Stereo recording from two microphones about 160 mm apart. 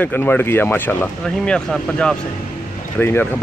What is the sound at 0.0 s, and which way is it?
Speech, 10° left (ahead or behind).